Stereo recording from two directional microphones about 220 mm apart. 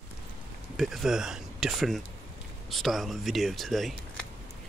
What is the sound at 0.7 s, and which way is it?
Speech, centre (ahead or behind).